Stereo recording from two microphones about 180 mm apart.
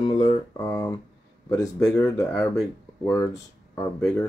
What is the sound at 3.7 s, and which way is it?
Speech, 15° left (ahead or behind).